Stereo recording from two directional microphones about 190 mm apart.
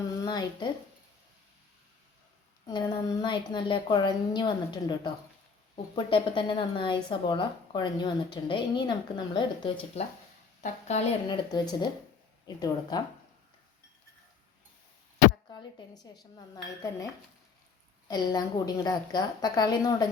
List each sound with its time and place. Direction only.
0.1 s speech: 20° left (ahead or behind)
2.6 s speech: 20° left (ahead or behind)
10.6 s a woman's voice: 35° left (ahead or behind)
11.3 s speech: 20° left (ahead or behind)
16.6 s speech: 20° left (ahead or behind)
18.1 s speech: 20° left (ahead or behind)